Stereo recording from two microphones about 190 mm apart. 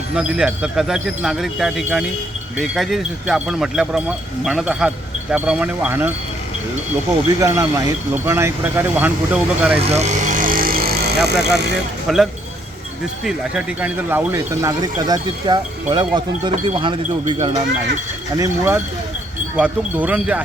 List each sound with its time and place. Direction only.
0.2 s speech: 5° right (ahead or behind)
7.3 s speech: 15° right (ahead or behind)
9.8 s vehicle: 35° right (ahead or behind); by 11.5 s 60° right (ahead or behind)
12.0 s speech: centre (ahead or behind); by 17.6 s 25° right (ahead or behind)
18.3 s speech: 15° right (ahead or behind)